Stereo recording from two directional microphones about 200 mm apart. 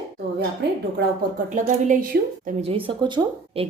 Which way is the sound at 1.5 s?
40° right (ahead or behind).